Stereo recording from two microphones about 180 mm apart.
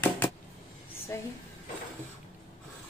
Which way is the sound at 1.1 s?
15° left (ahead or behind).